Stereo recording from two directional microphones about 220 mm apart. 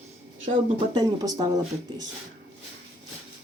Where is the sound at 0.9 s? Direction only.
15° right (ahead or behind).